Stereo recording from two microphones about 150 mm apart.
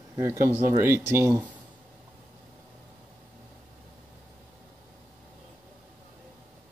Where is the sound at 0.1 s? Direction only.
20° right (ahead or behind).